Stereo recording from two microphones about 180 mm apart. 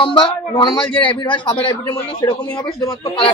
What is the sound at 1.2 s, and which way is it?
A man's voice, 30° left (ahead or behind).